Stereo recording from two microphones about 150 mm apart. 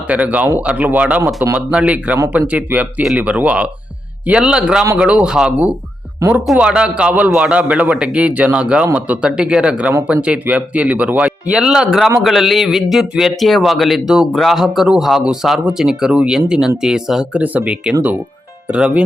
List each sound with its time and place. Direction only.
0.1 s a man's voice: 10° right (ahead or behind)
6.4 s a man's voice: 5° right (ahead or behind)